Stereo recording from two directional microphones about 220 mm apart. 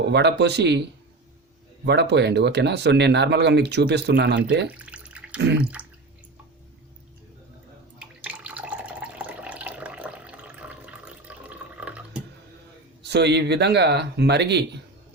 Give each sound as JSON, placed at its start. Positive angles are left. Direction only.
{"t": 0.1, "sound": "speech", "side_deg": -50}
{"t": 4.7, "sound": "water tap", "side_deg": -5}
{"t": 5.8, "sound": "drip", "side_deg": -5}
{"t": 7.9, "sound": "water", "side_deg": -5}
{"t": 13.0, "sound": "speech", "side_deg": -50}